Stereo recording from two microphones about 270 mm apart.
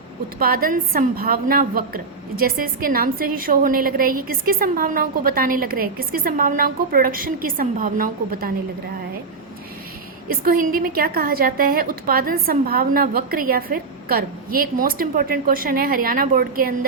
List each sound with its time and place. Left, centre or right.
0.3 s a woman's voice: right
10.2 s a woman's voice: right